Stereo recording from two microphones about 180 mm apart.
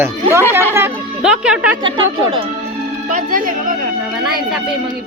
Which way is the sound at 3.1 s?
50° right (ahead or behind).